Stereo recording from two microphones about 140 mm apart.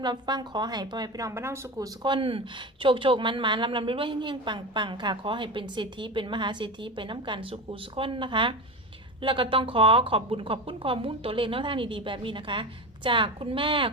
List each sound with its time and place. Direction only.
0.0 s a woman's voice: 30° right (ahead or behind)